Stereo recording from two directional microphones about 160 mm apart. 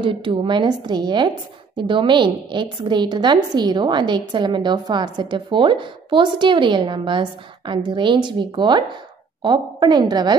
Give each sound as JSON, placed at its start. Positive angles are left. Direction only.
{"t": 0.0, "sound": "a woman's voice", "side_deg": -30}